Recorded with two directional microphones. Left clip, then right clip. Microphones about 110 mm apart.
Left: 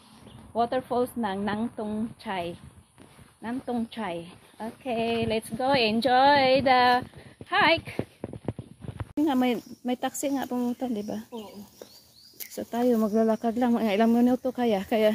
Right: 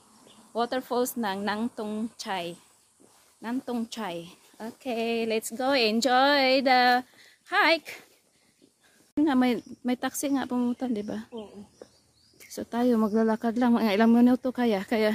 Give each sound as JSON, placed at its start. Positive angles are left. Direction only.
{"t": 0.5, "sound": "a woman's voice", "side_deg": -25}
{"t": 9.1, "sound": "a woman's voice", "side_deg": -30}
{"t": 12.5, "sound": "a woman's voice", "side_deg": -30}